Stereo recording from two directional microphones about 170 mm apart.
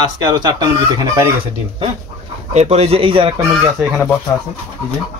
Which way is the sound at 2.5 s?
35° right (ahead or behind).